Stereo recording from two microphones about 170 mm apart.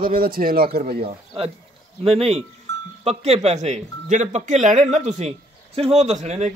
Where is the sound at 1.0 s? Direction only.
35° right (ahead or behind).